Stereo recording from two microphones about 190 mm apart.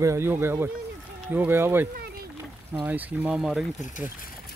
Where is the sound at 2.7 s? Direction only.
10° right (ahead or behind).